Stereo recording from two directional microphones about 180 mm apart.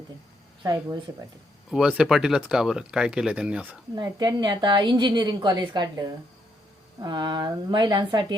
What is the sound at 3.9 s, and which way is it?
Speech, 25° right (ahead or behind).